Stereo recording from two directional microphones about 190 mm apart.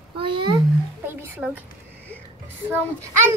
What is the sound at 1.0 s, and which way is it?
Speech, 10° right (ahead or behind).